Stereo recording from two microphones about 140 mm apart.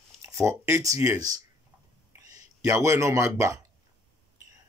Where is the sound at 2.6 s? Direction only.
20° right (ahead or behind).